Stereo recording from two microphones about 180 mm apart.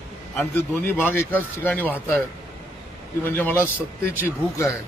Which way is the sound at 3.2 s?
10° left (ahead or behind).